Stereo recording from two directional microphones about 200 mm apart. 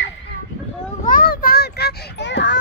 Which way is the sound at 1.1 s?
45° left (ahead or behind).